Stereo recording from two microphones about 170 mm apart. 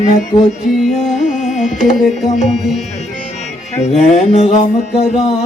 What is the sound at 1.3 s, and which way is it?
Carnatic music, 45° left (ahead or behind).